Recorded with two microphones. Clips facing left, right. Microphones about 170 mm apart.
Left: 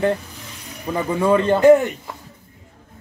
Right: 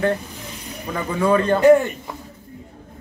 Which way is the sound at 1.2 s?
20° left (ahead or behind).